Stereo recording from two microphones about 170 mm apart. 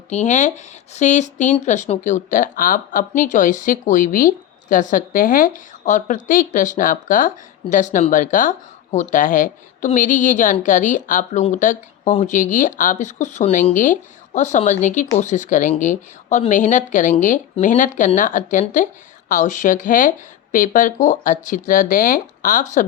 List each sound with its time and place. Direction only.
0.1 s speech: 45° left (ahead or behind)